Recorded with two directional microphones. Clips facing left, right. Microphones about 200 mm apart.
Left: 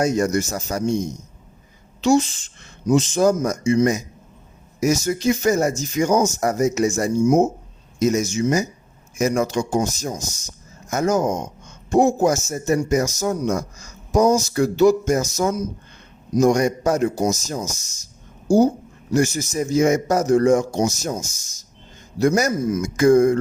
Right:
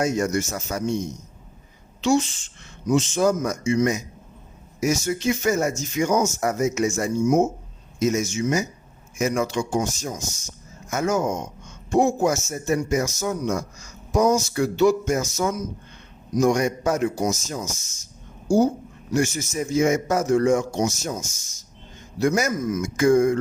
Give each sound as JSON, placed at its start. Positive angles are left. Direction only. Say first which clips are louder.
{"t": 0.0, "sound": "speech", "louder": "left 3 dB", "side_deg": 35}
{"t": 2.0, "sound": "a woman's voice", "louder": "left 3 dB", "side_deg": 40}
{"t": 19.1, "sound": "speech", "louder": "left 3 dB", "side_deg": 40}